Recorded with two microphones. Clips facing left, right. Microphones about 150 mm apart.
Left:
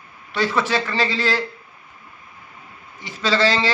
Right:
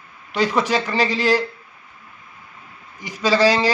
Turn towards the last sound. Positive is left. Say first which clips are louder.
# right 3 dB
turn(degrees=-10)  # may be behind; listen again after turning